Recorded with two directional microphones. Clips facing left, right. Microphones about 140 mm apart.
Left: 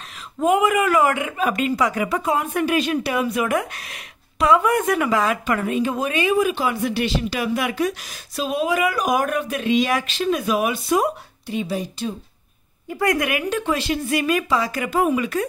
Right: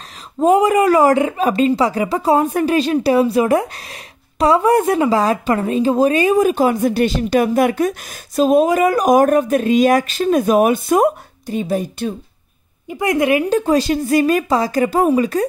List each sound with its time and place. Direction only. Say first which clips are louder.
0.4 s speech: right 5 dB; 35° right (ahead or behind)
12.8 s speech: right 5 dB; 20° right (ahead or behind)